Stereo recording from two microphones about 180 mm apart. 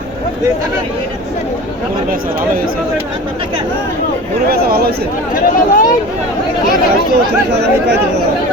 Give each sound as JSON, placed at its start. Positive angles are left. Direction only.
{"t": 4.4, "sound": "speech", "side_deg": -60}
{"t": 5.3, "sound": "speech", "side_deg": 50}
{"t": 7.5, "sound": "speech", "side_deg": -70}